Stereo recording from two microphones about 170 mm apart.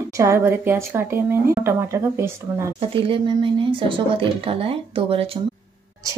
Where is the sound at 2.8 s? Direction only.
30° right (ahead or behind).